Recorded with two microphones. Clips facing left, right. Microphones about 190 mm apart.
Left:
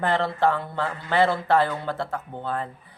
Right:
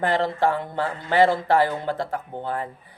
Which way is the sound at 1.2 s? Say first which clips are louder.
Right 2 dB; 15° right (ahead or behind).